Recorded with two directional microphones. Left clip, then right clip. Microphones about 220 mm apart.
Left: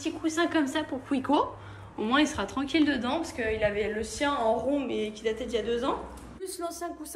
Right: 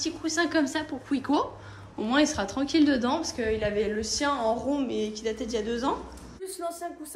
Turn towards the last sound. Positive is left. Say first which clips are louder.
# even
turn(degrees=-10)  # may be behind; listen again after turning